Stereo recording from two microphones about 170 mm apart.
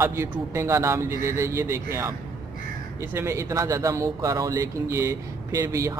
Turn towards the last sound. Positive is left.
turn(degrees=-20)  # may be behind; listen again after turning